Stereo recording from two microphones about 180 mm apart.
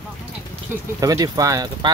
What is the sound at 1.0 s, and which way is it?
Speech, 20° right (ahead or behind).